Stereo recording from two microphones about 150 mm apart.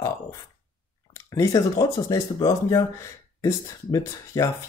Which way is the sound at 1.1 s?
20° left (ahead or behind).